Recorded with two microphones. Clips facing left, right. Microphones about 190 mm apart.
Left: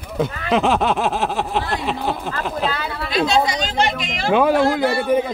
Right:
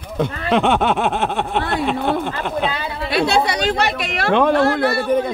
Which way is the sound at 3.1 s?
65° right (ahead or behind).